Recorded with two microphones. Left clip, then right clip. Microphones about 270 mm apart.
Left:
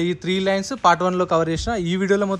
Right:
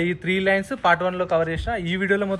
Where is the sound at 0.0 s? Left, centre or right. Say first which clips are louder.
Even; centre.